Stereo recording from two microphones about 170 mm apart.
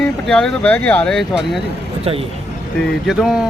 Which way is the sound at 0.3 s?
5° left (ahead or behind).